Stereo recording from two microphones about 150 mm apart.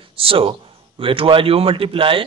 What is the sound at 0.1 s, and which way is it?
A man's voice, 40° right (ahead or behind).